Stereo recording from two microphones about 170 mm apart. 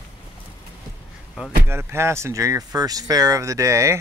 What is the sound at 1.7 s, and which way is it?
Speech, 15° right (ahead or behind).